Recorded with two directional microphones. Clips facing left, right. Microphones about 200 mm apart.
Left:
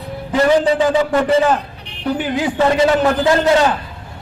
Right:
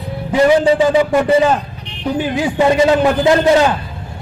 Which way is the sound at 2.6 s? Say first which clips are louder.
Right 2 dB; 15° right (ahead or behind).